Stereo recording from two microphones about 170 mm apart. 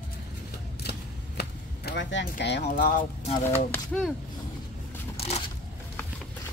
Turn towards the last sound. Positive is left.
turn(degrees=35)  # may be behind; listen again after turning